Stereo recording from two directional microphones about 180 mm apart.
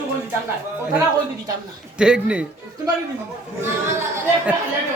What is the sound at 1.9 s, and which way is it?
Speech, 5° right (ahead or behind).